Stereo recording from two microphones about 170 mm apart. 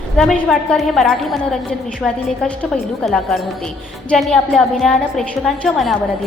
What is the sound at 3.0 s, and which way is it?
A woman's voice, centre (ahead or behind).